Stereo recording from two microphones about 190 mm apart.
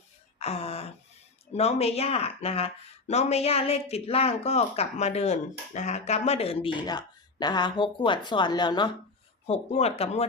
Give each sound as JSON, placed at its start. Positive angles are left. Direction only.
{"t": 0.3, "sound": "a sound", "side_deg": 35}
{"t": 1.5, "sound": "speech", "side_deg": 35}
{"t": 9.5, "sound": "speech", "side_deg": 35}